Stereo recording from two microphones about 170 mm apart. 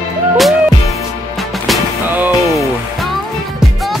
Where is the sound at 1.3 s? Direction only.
Centre (ahead or behind).